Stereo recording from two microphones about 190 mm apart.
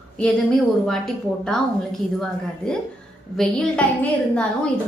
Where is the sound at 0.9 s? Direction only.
Centre (ahead or behind).